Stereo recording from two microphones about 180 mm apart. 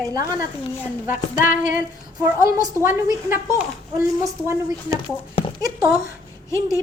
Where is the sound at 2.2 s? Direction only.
20° right (ahead or behind).